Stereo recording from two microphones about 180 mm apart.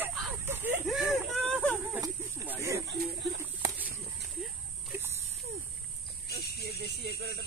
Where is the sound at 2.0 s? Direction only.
15° right (ahead or behind).